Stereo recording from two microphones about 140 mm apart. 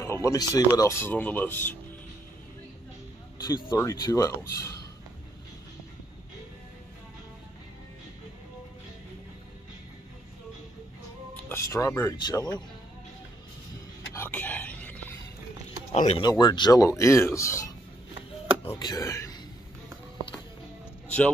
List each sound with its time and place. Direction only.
0.0 s speech: 20° left (ahead or behind)
3.4 s speech: 30° left (ahead or behind)
11.4 s speech: 20° left (ahead or behind)
14.1 s a sound: 15° left (ahead or behind)
15.9 s speech: 50° left (ahead or behind)
16.2 s speech: 30° left (ahead or behind)